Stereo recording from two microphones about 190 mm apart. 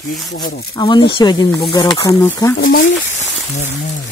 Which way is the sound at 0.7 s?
20° left (ahead or behind).